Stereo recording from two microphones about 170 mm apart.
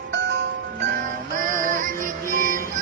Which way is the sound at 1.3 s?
55° right (ahead or behind).